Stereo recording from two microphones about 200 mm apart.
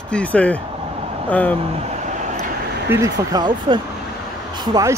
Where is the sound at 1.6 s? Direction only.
30° right (ahead or behind).